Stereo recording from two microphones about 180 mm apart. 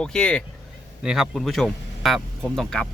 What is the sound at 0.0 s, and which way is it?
Speech, 5° left (ahead or behind).